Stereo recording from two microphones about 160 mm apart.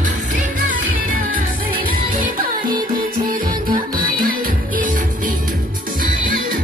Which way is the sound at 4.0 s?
60° right (ahead or behind).